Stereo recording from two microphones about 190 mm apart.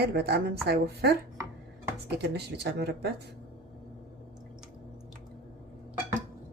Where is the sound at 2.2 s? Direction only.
60° right (ahead or behind).